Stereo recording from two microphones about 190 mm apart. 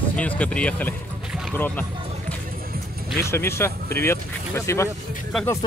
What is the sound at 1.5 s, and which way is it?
Music, 10° left (ahead or behind).